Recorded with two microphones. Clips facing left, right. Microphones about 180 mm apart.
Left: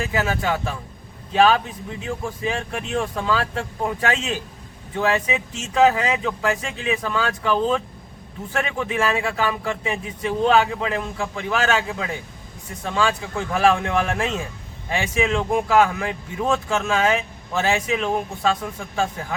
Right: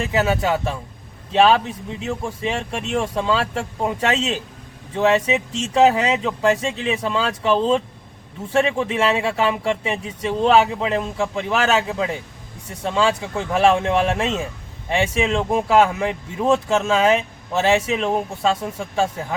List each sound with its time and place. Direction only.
0.0 s speech: 25° right (ahead or behind)